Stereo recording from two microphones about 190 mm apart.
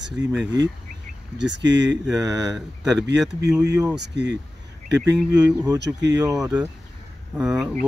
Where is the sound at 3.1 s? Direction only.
65° right (ahead or behind).